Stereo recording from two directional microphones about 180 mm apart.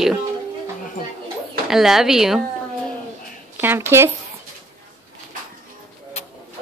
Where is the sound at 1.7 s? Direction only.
Centre (ahead or behind).